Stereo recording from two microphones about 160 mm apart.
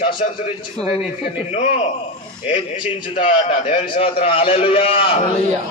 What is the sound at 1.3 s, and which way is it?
A man's voice, 40° left (ahead or behind).